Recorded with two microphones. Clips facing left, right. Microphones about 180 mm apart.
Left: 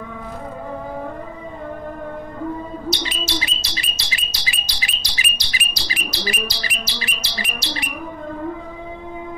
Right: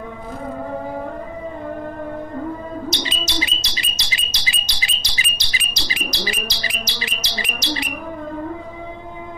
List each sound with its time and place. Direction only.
3.0 s bird: 20° right (ahead or behind)